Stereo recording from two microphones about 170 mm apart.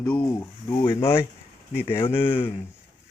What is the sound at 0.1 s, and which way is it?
Speech, 15° left (ahead or behind).